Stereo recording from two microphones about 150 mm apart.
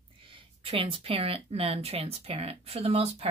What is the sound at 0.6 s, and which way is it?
Speech, 35° right (ahead or behind).